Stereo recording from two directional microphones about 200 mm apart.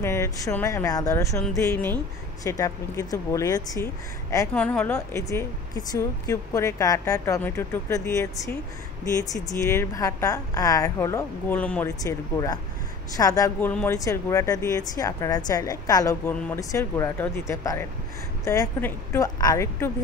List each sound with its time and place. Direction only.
0.0 s speech: 15° left (ahead or behind)